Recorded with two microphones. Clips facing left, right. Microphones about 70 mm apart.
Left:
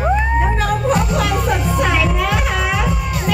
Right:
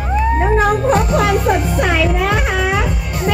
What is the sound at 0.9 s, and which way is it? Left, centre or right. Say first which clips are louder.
Music: right 3 dB; right.